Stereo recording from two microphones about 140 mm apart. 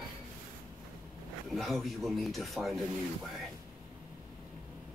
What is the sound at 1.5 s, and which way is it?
Speech, centre (ahead or behind).